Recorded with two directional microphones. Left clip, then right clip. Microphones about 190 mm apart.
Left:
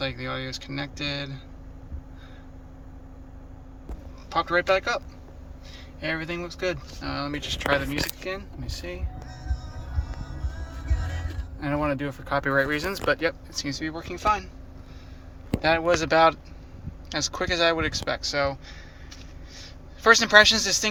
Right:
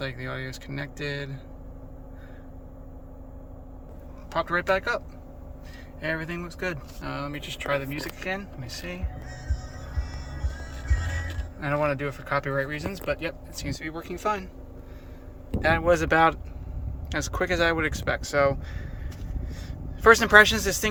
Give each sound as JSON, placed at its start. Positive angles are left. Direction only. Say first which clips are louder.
{"t": 0.0, "sound": "speech", "louder": "left 3 dB", "side_deg": -10}
{"t": 4.3, "sound": "speech", "louder": "left 2 dB", "side_deg": -10}
{"t": 11.6, "sound": "speech", "louder": "right 1 dB", "side_deg": 5}
{"t": 15.6, "sound": "a man's voice", "louder": "even", "side_deg": -15}